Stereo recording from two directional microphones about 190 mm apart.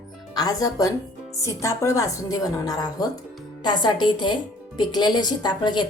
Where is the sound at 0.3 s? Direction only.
20° left (ahead or behind).